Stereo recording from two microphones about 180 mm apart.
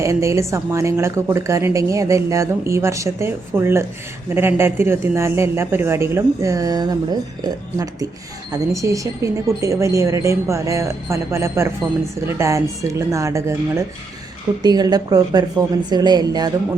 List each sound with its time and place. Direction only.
0.0 s a woman's voice: 15° right (ahead or behind)